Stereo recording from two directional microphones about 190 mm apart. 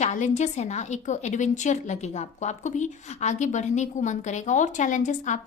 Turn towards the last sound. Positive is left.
turn(degrees=40)  # may be behind; listen again after turning